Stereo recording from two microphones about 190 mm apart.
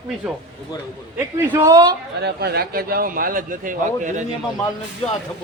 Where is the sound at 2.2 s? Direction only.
60° right (ahead or behind); by 4.2 s 40° right (ahead or behind).